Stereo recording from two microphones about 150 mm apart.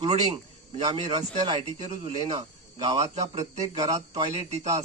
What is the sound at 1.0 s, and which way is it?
Speech, 25° right (ahead or behind).